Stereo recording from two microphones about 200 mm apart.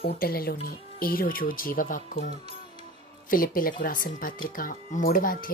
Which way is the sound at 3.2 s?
45° left (ahead or behind).